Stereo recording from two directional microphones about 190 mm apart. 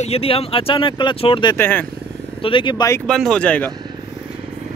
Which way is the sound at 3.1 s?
5° left (ahead or behind).